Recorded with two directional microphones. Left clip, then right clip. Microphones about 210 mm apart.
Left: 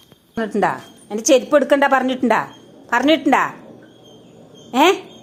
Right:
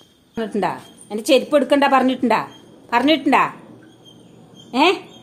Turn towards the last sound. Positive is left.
turn(degrees=0)  # may be behind; listen again after turning